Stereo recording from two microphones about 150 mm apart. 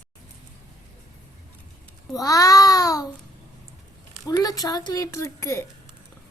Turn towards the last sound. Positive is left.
turn(degrees=20)  # may be behind; listen again after turning